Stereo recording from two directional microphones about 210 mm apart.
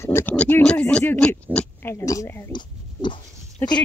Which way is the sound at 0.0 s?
10° left (ahead or behind).